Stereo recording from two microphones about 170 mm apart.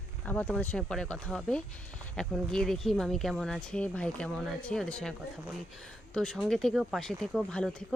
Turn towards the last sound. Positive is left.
turn(degrees=5)  # may be behind; listen again after turning